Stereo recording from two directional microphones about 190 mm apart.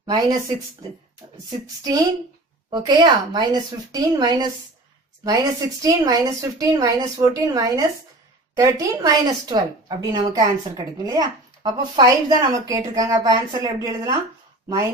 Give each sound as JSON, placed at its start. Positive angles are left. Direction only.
{"t": 0.0, "sound": "a woman's voice", "side_deg": -20}
{"t": 2.7, "sound": "a woman's voice", "side_deg": -20}